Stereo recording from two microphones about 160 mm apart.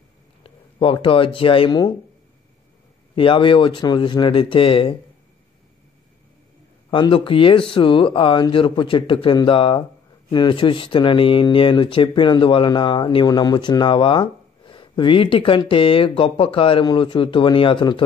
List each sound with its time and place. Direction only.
0.4 s speech: 35° left (ahead or behind)
3.2 s speech: 30° left (ahead or behind)
6.9 s speech: 30° left (ahead or behind)